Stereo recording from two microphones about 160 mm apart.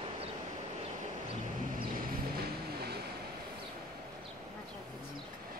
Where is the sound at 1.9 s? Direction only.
70° right (ahead or behind).